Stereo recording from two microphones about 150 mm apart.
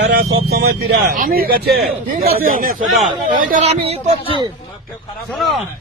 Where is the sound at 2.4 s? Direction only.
65° right (ahead or behind).